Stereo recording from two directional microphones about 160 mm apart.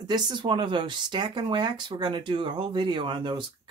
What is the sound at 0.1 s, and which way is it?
Speech, 25° right (ahead or behind).